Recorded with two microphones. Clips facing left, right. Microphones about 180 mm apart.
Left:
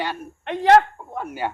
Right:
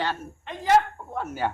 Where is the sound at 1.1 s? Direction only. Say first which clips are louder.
Even; 15° left (ahead or behind).